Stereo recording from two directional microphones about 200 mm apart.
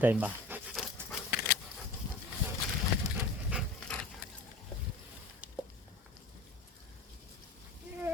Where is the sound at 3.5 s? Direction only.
Centre (ahead or behind).